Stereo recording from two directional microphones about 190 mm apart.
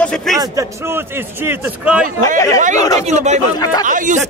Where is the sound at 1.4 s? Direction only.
10° right (ahead or behind).